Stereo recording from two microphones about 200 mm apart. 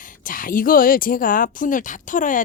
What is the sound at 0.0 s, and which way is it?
A woman's voice, 40° left (ahead or behind).